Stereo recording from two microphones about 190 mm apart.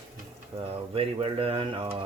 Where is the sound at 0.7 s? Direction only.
30° right (ahead or behind).